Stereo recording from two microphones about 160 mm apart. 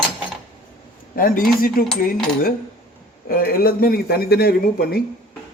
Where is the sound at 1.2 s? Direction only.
65° left (ahead or behind).